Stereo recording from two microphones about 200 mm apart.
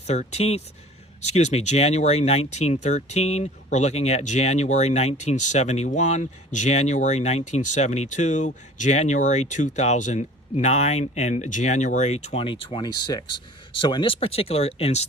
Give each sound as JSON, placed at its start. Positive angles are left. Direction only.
{"t": 0.1, "sound": "speech", "side_deg": 35}